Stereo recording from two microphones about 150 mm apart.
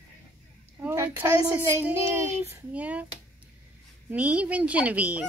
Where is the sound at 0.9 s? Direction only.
20° right (ahead or behind).